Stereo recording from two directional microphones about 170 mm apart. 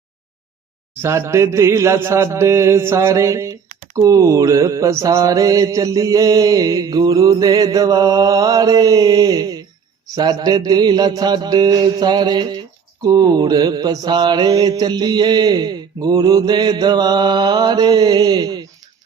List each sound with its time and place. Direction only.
1.0 s mantra: 15° right (ahead or behind)